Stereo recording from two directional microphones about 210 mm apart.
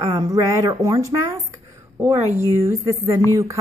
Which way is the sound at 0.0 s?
15° right (ahead or behind).